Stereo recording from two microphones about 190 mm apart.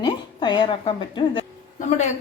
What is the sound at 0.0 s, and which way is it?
A woman's voice, 25° left (ahead or behind).